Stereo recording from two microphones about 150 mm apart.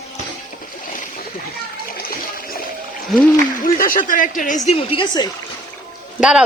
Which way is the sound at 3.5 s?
70° left (ahead or behind).